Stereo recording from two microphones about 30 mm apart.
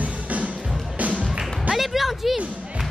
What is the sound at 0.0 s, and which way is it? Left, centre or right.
Music, right.